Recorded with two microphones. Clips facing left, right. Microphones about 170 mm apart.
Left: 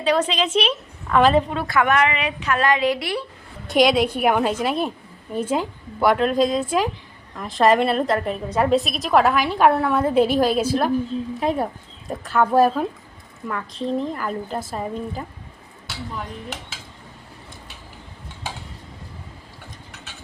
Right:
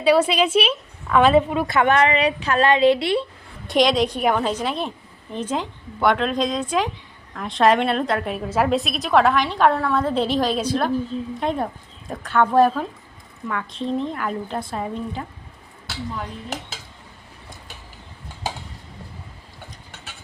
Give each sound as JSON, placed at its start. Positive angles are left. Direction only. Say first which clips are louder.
{"t": 0.0, "sound": "a woman's voice", "louder": "right 3 dB", "side_deg": -10}
{"t": 1.6, "sound": "a woman's voice", "louder": "right 1 dB", "side_deg": -25}
{"t": 3.7, "sound": "a woman's voice", "louder": "left 1 dB", "side_deg": 5}